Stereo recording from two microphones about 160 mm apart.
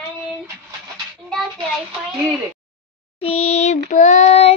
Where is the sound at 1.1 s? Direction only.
Centre (ahead or behind).